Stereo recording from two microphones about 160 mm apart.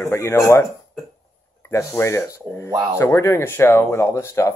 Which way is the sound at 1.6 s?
15° left (ahead or behind).